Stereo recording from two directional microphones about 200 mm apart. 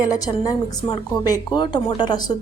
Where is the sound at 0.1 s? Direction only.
20° left (ahead or behind).